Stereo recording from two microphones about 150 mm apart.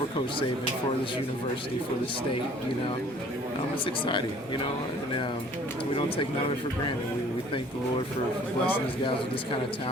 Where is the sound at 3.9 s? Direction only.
35° left (ahead or behind).